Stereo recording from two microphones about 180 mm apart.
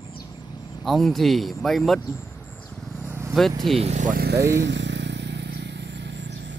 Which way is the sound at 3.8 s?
40° right (ahead or behind).